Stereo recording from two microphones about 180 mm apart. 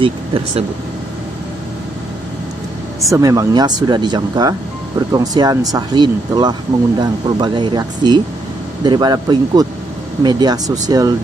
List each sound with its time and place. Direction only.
0.0 s speech: 30° right (ahead or behind)
3.1 s speech: 20° right (ahead or behind)